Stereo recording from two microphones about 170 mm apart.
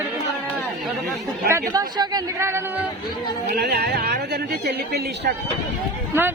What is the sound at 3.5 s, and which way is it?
Speech, 70° right (ahead or behind).